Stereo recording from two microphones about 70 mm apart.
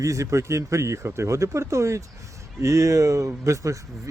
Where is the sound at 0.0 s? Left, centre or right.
Right.